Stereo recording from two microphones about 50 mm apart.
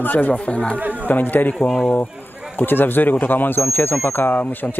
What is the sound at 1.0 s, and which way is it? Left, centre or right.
Speech, left.